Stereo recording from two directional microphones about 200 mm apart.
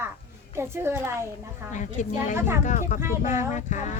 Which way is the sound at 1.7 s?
40° left (ahead or behind).